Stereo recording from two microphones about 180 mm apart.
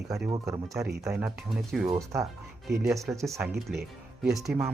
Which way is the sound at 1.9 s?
20° right (ahead or behind).